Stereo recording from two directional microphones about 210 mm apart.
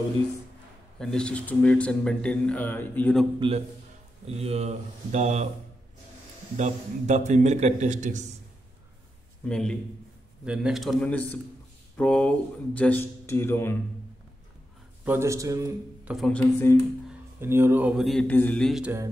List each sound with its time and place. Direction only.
0.9 s speech: 5° left (ahead or behind)
3.3 s a man's voice: 25° right (ahead or behind)
6.5 s a man's voice: 35° right (ahead or behind)
9.5 s speech: 5° left (ahead or behind)
15.0 s a man's voice: 15° right (ahead or behind)
16.2 s speech: 5° left (ahead or behind)
17.1 s speech: 10° right (ahead or behind)